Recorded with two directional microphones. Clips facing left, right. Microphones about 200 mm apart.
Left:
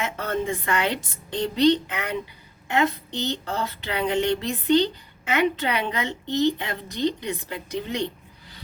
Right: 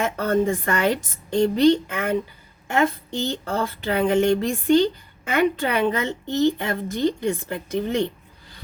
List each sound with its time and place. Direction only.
0.0 s a woman's voice: 45° right (ahead or behind)